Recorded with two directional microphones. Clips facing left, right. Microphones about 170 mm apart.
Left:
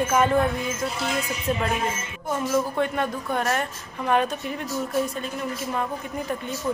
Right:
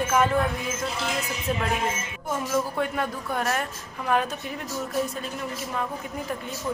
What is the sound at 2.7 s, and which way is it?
Speech, 5° right (ahead or behind).